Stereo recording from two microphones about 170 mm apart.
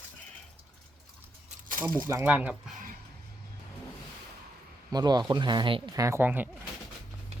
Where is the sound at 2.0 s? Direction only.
15° right (ahead or behind).